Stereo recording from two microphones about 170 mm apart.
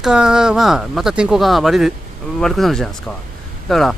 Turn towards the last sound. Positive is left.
turn(degrees=0)  # may be behind; listen again after turning